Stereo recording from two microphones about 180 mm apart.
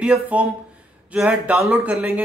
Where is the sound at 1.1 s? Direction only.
5° right (ahead or behind).